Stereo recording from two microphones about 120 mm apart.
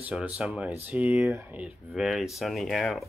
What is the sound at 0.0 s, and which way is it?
Speech, 10° right (ahead or behind).